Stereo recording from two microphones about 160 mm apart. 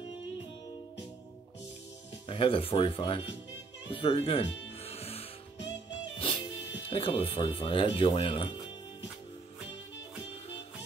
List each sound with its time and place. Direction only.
2.2 s speech: 35° left (ahead or behind)
3.9 s music: 35° left (ahead or behind)
6.9 s speech: 35° left (ahead or behind)